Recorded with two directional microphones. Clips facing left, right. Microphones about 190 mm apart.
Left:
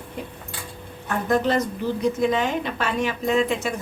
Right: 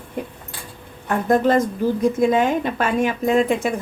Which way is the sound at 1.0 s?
50° right (ahead or behind).